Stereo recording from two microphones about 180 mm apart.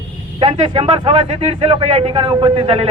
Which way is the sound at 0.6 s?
25° right (ahead or behind).